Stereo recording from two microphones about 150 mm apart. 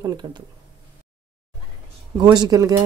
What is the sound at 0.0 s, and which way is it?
Speech, 30° right (ahead or behind).